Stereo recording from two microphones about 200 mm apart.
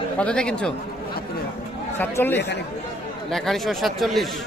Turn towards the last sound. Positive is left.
turn(degrees=0)  # may be behind; listen again after turning